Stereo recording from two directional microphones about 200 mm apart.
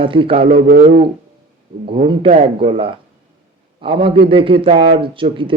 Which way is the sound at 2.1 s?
30° right (ahead or behind).